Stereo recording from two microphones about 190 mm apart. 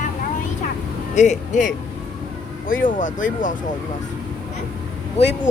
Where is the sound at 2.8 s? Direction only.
45° left (ahead or behind).